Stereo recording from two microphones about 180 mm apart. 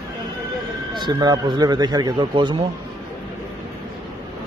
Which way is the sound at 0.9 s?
25° right (ahead or behind).